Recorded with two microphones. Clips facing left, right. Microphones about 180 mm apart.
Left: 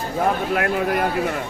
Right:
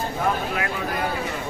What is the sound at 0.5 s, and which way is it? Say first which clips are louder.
Speech: left 6 dB; 55° left (ahead or behind).